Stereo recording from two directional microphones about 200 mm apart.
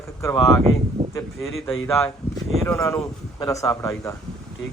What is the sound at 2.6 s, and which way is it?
A man's voice, 15° left (ahead or behind).